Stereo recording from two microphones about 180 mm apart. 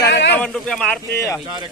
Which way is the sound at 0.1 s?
75° left (ahead or behind).